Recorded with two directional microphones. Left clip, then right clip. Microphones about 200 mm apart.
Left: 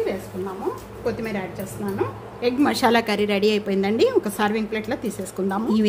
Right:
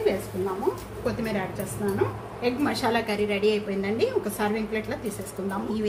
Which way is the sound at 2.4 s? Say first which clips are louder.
Left 6 dB; 55° left (ahead or behind).